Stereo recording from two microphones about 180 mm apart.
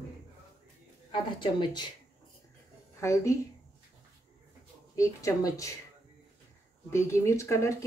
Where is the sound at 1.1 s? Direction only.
25° left (ahead or behind).